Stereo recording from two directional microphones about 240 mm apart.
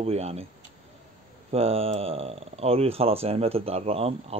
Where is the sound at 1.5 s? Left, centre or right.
Right.